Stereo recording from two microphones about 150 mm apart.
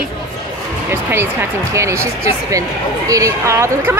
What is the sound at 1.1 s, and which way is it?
Speech, 15° right (ahead or behind).